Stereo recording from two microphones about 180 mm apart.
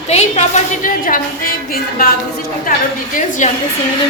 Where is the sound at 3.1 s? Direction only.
45° left (ahead or behind).